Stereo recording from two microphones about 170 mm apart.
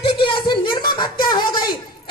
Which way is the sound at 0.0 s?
30° left (ahead or behind).